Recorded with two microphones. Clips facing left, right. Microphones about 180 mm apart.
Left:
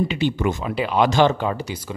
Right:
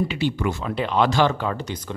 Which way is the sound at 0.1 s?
20° left (ahead or behind).